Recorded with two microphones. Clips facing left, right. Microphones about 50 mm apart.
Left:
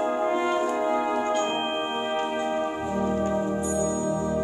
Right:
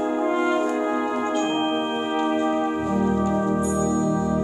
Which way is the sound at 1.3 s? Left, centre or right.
Centre.